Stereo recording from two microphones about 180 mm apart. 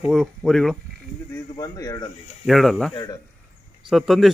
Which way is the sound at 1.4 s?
20° left (ahead or behind).